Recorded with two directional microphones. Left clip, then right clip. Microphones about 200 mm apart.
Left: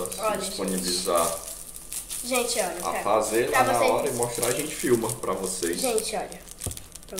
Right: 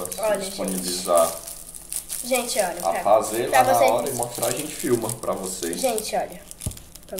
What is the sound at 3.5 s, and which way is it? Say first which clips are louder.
Speech: right 7 dB; 20° right (ahead or behind).